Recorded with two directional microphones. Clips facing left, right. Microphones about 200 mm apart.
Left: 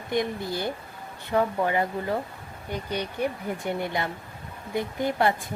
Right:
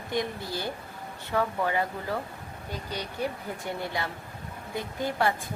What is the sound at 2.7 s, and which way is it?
Speech, 60° left (ahead or behind).